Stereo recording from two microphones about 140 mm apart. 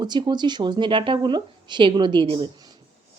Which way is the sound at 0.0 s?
30° right (ahead or behind).